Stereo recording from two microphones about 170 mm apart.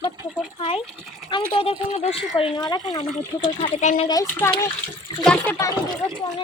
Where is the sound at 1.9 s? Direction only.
35° left (ahead or behind).